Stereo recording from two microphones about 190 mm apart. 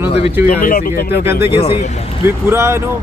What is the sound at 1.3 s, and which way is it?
Speech, 15° right (ahead or behind).